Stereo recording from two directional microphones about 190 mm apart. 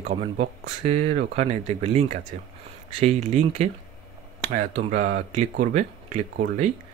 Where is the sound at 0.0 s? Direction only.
35° right (ahead or behind).